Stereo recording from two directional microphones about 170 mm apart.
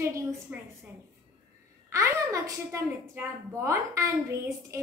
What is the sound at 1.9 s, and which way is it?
A woman's voice, 15° right (ahead or behind).